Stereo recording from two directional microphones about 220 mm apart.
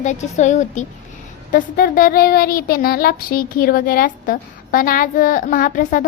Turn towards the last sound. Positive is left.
turn(degrees=40)  # may be behind; listen again after turning